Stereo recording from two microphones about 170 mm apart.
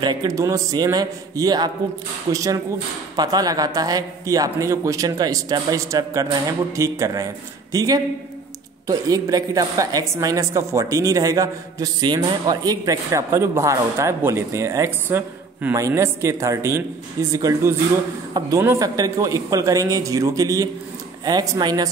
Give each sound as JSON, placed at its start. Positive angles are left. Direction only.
{"t": 0.0, "sound": "a man's voice", "side_deg": -25}